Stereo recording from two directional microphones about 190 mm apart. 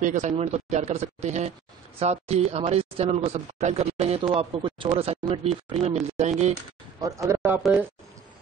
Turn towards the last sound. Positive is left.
turn(degrees=-5)  # may be behind; listen again after turning